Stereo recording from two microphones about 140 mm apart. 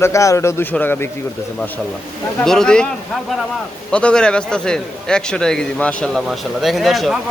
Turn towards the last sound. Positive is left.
turn(degrees=0)  # may be behind; listen again after turning